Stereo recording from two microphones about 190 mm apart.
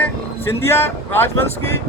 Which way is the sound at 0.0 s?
10° left (ahead or behind).